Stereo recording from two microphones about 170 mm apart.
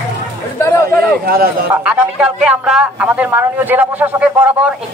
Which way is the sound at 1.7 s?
5° right (ahead or behind).